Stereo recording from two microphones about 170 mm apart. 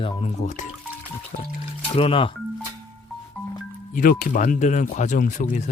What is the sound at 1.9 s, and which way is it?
Speech, 30° left (ahead or behind).